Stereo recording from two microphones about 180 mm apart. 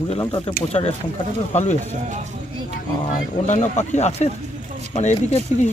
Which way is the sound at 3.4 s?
40° left (ahead or behind).